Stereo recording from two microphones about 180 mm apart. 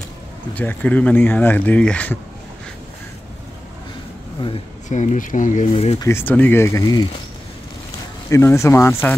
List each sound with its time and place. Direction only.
0.6 s speech: 10° left (ahead or behind)
4.8 s speech: 40° left (ahead or behind)
5.9 s speech: 15° left (ahead or behind)
8.3 s speech: 15° left (ahead or behind)